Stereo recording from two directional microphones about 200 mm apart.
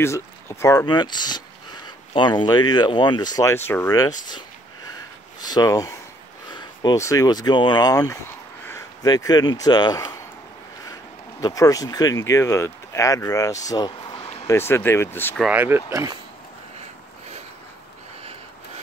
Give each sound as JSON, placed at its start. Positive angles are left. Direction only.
{"t": 0.0, "sound": "speech", "side_deg": 15}
{"t": 5.4, "sound": "speech", "side_deg": 20}
{"t": 11.4, "sound": "speech", "side_deg": 15}
{"t": 15.4, "sound": "speech", "side_deg": -10}